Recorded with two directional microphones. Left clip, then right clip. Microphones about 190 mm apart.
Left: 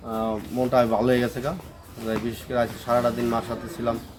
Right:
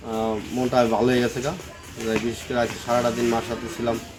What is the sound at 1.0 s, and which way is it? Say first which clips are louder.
Speech: right 1 dB; 30° left (ahead or behind).